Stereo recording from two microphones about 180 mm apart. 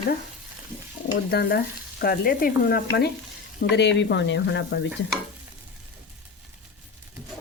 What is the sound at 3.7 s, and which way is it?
Speech, 70° left (ahead or behind).